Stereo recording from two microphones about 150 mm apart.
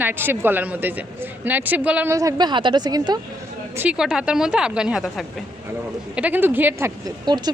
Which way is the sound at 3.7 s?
10° right (ahead or behind).